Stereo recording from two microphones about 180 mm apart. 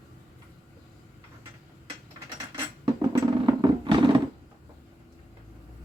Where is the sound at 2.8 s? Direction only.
25° right (ahead or behind).